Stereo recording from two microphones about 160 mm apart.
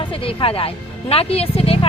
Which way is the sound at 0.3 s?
35° left (ahead or behind).